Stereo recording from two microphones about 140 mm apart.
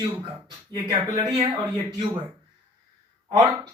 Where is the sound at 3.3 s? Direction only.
25° right (ahead or behind).